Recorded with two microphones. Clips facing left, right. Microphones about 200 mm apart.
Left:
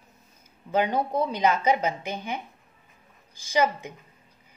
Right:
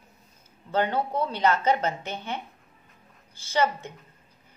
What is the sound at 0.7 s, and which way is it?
A woman's voice, 15° left (ahead or behind).